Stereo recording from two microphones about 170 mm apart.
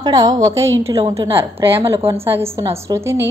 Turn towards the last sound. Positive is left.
turn(degrees=-15)  # may be behind; listen again after turning